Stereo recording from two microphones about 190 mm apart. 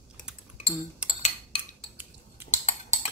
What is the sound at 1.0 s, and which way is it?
Cutlery, 5° right (ahead or behind).